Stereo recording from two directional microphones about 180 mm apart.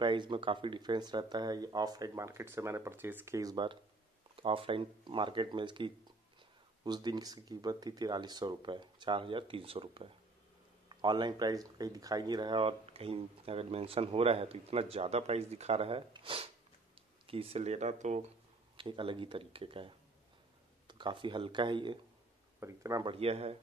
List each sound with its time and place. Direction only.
0.0 s speech: 25° right (ahead or behind); by 18.2 s 40° right (ahead or behind)
18.8 s speech: 30° right (ahead or behind)
23.1 s speech: 35° right (ahead or behind)